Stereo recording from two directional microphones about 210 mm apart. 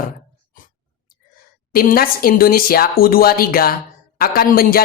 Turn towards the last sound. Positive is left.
turn(degrees=45)  # may be behind; listen again after turning